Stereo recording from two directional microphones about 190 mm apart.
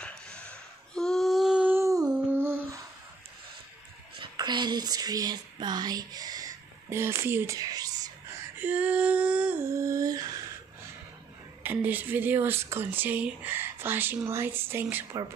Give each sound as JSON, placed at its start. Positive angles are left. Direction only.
{"t": 0.0, "sound": "a sound", "side_deg": 5}
{"t": 4.2, "sound": "speech", "side_deg": -25}
{"t": 8.5, "sound": "humming", "side_deg": -10}
{"t": 11.6, "sound": "speech", "side_deg": -10}